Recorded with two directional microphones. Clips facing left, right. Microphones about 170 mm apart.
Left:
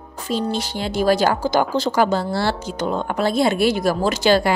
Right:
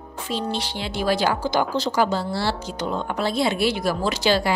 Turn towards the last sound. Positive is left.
turn(degrees=50)  # may be behind; listen again after turning